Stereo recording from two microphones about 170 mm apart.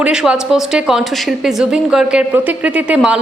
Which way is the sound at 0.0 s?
5° right (ahead or behind).